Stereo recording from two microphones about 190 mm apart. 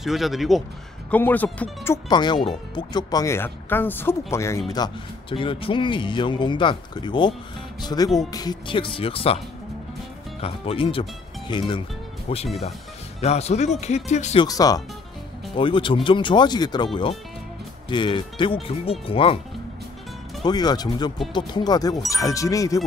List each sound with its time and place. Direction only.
0.0 s speech: centre (ahead or behind)
2.0 s speech: 25° left (ahead or behind)
10.4 s speech: 30° left (ahead or behind)
14.4 s speech: 20° left (ahead or behind)
20.4 s speech: 20° left (ahead or behind)